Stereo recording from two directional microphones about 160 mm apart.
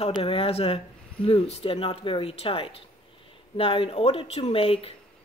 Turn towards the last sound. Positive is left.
turn(degrees=35)  # may be behind; listen again after turning